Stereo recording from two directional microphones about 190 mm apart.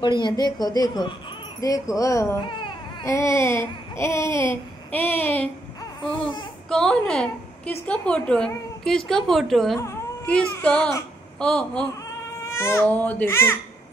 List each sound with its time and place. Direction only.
0.0 s a woman's voice: 25° left (ahead or behind)
6.7 s a woman's voice: 5° left (ahead or behind)
12.4 s speech: 15° left (ahead or behind)